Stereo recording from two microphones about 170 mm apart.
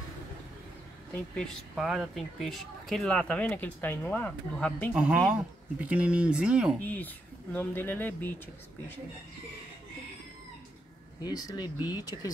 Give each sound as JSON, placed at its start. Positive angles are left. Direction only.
{"t": 1.1, "sound": "speech", "side_deg": 5}
{"t": 4.9, "sound": "speech", "side_deg": -5}
{"t": 6.8, "sound": "speech", "side_deg": 10}
{"t": 11.2, "sound": "speech", "side_deg": 20}